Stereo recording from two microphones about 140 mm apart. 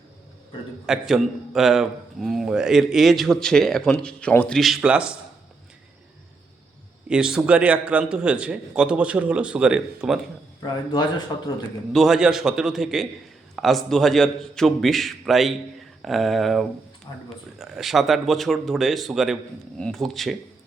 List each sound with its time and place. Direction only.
0.9 s a man's voice: 5° right (ahead or behind)
7.1 s a man's voice: 5° right (ahead or behind)
10.6 s speech: 30° left (ahead or behind)
11.9 s a man's voice: centre (ahead or behind)